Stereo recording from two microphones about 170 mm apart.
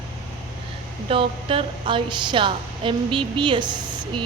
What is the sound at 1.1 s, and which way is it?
A woman's voice, 30° right (ahead or behind).